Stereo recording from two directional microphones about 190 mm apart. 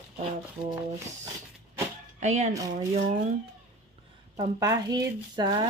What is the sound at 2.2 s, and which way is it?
Speech, 40° right (ahead or behind).